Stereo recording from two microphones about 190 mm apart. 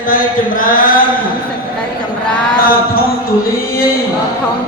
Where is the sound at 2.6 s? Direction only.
50° left (ahead or behind).